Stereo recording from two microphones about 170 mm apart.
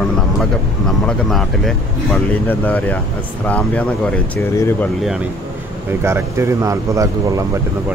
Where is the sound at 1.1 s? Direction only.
Centre (ahead or behind).